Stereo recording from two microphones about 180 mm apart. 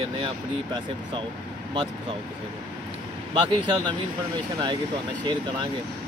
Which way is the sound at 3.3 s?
25° right (ahead or behind).